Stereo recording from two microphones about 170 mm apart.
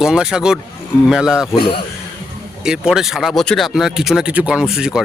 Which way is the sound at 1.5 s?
30° left (ahead or behind).